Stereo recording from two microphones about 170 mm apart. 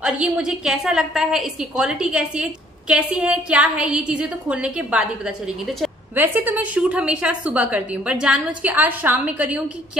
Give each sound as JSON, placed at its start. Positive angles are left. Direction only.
{"t": 0.0, "sound": "a woman's voice", "side_deg": -5}